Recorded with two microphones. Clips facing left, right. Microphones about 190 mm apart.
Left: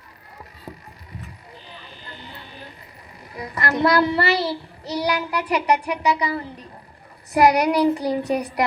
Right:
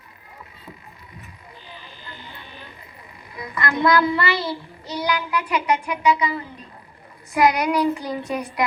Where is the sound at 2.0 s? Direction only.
35° left (ahead or behind).